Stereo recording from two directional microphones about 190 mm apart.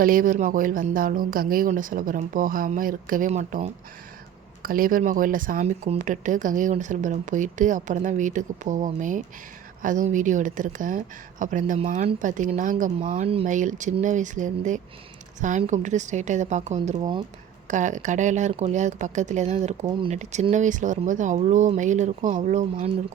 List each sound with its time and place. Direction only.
0.0 s speech: 45° right (ahead or behind); by 17.2 s 30° right (ahead or behind)
17.7 s speech: 40° right (ahead or behind)